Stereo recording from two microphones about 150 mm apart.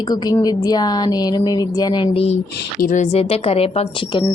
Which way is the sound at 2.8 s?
60° left (ahead or behind).